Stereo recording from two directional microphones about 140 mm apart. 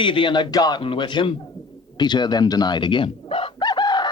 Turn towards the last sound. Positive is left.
turn(degrees=30)  # may be behind; listen again after turning